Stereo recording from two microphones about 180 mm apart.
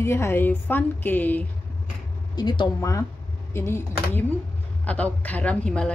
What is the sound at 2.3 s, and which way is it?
A woman's voice, 25° left (ahead or behind).